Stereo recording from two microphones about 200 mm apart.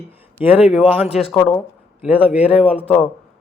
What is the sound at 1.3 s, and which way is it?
Speech, 5° left (ahead or behind).